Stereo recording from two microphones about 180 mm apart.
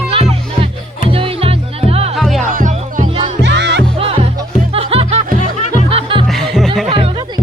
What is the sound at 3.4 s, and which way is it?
Music, 70° right (ahead or behind).